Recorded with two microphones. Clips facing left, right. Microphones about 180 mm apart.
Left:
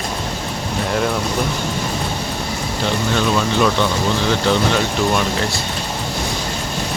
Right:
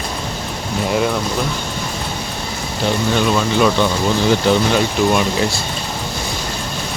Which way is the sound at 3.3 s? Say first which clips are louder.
Right 2 dB; 5° right (ahead or behind).